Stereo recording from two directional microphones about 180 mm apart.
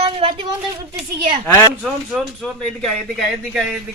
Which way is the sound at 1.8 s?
Centre (ahead or behind).